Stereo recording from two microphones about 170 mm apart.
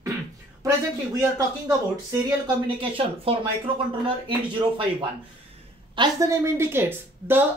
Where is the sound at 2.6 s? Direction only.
35° right (ahead or behind).